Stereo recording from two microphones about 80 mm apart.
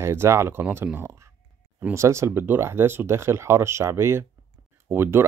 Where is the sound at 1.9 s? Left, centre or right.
Right.